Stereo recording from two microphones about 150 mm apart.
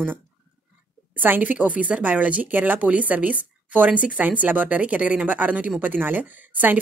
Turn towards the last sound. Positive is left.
turn(degrees=-10)  # may be behind; listen again after turning